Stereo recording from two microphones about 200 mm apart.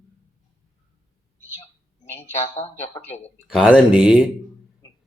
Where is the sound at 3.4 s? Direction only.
Centre (ahead or behind).